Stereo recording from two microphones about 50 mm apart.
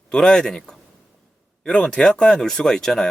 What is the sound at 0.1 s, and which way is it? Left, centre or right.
Speech, centre.